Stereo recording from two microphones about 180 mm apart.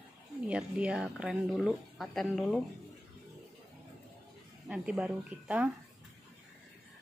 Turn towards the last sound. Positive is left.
turn(degrees=-5)  # may be behind; listen again after turning